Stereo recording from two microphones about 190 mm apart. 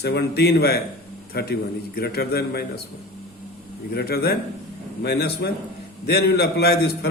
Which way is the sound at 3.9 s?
55° left (ahead or behind).